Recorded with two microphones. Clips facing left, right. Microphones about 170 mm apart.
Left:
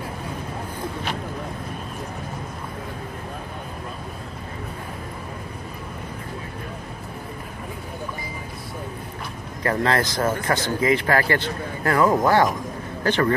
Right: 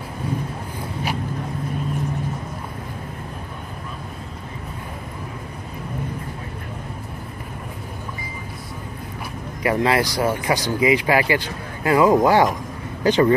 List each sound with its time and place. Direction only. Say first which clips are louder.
9.6 s speech: right 2 dB; 10° right (ahead or behind)